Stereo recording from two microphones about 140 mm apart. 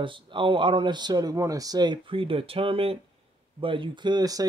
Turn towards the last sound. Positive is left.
turn(degrees=-25)  # may be behind; listen again after turning